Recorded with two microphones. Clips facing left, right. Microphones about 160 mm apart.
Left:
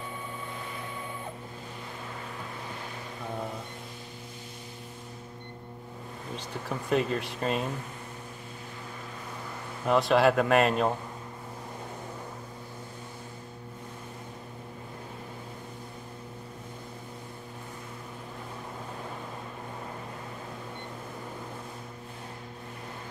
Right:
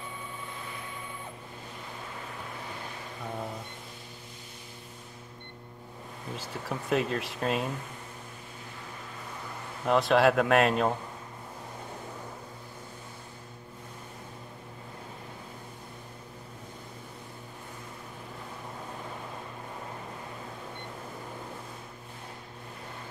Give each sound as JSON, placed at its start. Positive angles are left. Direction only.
{"t": 6.3, "sound": "speech", "side_deg": 0}
{"t": 9.8, "sound": "speech", "side_deg": 0}